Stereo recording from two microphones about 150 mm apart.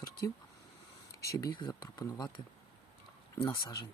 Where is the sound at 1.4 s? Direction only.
30° left (ahead or behind).